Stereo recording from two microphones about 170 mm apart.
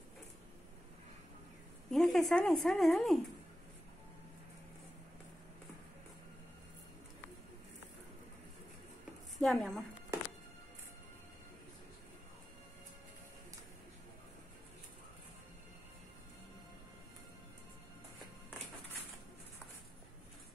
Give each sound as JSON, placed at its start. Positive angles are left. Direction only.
{"t": 1.9, "sound": "speech", "side_deg": 0}
{"t": 9.4, "sound": "speech", "side_deg": 0}